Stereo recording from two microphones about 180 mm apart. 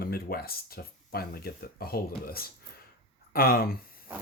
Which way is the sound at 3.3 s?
55° left (ahead or behind).